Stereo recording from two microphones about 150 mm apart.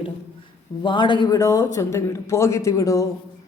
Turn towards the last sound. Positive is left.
turn(degrees=20)  # may be behind; listen again after turning